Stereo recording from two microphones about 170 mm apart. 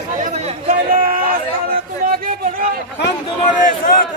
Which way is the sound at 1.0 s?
55° right (ahead or behind).